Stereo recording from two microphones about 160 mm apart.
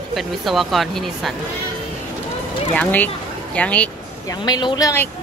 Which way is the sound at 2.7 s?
10° left (ahead or behind).